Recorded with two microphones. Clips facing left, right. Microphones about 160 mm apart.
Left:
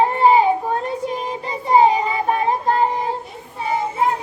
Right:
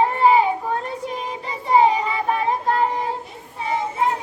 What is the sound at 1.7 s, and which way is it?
Child singing, 30° left (ahead or behind).